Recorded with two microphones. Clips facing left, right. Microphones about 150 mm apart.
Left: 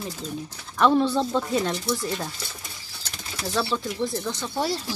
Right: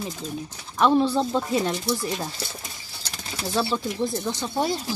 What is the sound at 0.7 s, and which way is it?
Speech, centre (ahead or behind).